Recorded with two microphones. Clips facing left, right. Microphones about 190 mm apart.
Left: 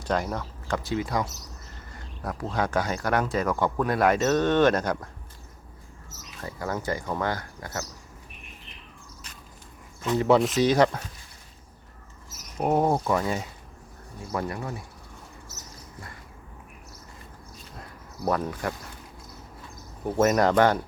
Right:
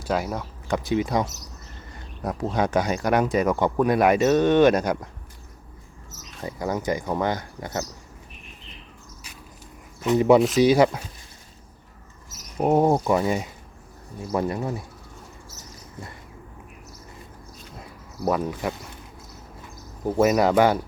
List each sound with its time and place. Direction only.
0.0 s speech: 5° right (ahead or behind)
6.1 s speech: 15° right (ahead or behind)
10.0 s speech: 15° right (ahead or behind)
12.5 s speech: 15° right (ahead or behind)
18.3 s speech: 10° right (ahead or behind)
20.1 s speech: 10° right (ahead or behind)